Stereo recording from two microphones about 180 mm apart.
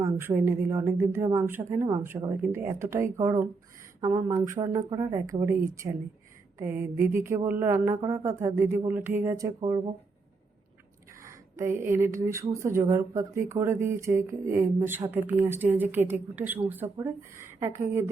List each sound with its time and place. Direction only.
0.0 s speech: 15° right (ahead or behind)
11.2 s speech: 15° right (ahead or behind)